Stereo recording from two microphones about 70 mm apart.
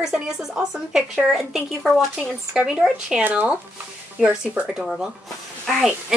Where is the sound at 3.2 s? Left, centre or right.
Right.